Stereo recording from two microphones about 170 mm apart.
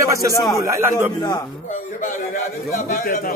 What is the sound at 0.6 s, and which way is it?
Speech, 20° right (ahead or behind).